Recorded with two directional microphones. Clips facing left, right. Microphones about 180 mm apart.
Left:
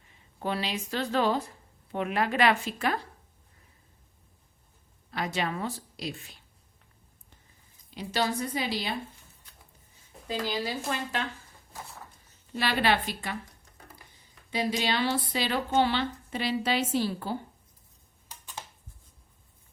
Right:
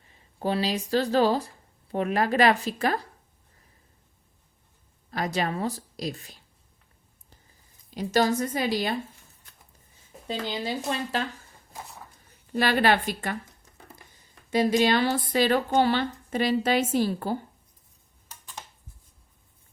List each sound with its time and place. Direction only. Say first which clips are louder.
0.3 s a woman's voice: right 5 dB; 35° right (ahead or behind)
5.1 s a woman's voice: right 3 dB; 40° right (ahead or behind)
7.9 s a woman's voice: right 6 dB; 45° right (ahead or behind)
10.4 s speech: right 1 dB; 25° right (ahead or behind)
12.5 s a woman's voice: right 4 dB; 45° right (ahead or behind)
14.5 s a woman's voice: right 7 dB; 50° right (ahead or behind)